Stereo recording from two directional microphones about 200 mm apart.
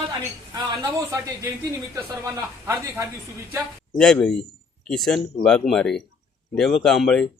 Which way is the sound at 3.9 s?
5° left (ahead or behind).